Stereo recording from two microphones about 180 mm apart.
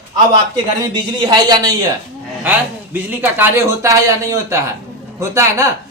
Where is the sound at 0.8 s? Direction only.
20° right (ahead or behind).